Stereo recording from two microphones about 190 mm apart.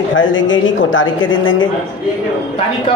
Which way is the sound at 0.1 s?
85° left.